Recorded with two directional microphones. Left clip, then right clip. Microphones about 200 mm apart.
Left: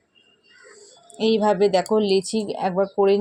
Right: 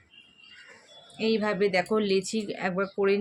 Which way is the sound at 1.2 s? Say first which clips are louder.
Left 7 dB; 20° left (ahead or behind).